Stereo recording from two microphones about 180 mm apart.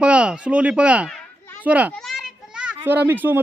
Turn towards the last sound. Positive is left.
turn(degrees=-10)  # may be behind; listen again after turning